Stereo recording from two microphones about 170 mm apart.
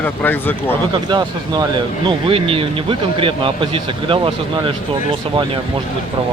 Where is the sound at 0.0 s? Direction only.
10° left (ahead or behind).